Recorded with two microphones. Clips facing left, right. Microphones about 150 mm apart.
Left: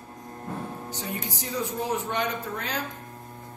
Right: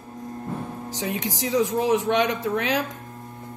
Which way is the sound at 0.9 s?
90° right.